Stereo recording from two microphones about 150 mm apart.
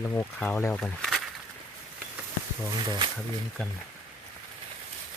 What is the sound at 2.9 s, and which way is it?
Speech, 30° right (ahead or behind).